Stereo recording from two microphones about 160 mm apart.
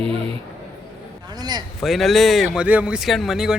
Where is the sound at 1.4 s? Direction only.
25° right (ahead or behind).